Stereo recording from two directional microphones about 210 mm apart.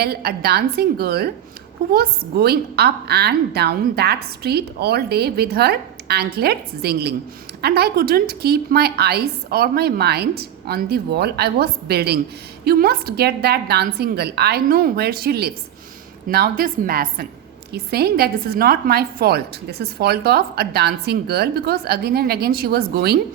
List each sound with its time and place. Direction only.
0.0 s a woman's voice: 50° right (ahead or behind)